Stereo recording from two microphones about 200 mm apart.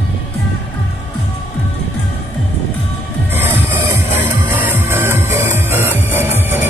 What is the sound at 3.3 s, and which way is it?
Music, 10° right (ahead or behind).